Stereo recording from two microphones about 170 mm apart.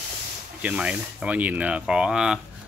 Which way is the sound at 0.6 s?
10° right (ahead or behind).